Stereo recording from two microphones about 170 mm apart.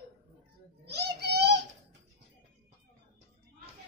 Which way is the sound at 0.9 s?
75° right (ahead or behind).